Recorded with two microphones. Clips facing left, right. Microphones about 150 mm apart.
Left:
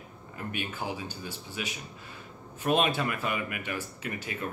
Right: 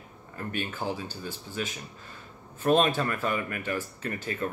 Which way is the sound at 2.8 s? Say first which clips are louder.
Right 2 dB; 10° left (ahead or behind).